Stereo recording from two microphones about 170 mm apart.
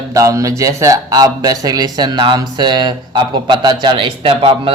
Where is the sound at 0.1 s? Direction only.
20° right (ahead or behind).